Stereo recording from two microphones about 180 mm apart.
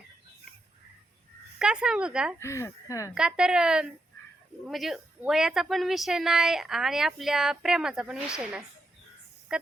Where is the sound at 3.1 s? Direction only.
5° right (ahead or behind).